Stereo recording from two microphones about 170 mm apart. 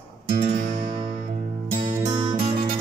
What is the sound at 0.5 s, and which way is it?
Music, 50° right (ahead or behind).